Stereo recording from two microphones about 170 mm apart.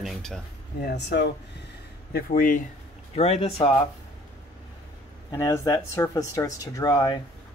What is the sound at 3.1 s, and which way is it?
Speech, 35° left (ahead or behind).